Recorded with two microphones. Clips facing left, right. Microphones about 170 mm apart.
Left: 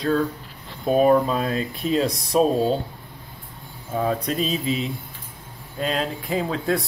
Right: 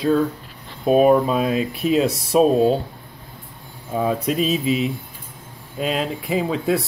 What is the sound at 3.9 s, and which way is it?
Speech, 10° right (ahead or behind).